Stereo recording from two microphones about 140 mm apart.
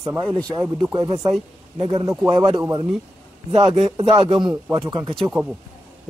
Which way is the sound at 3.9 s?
40° right (ahead or behind).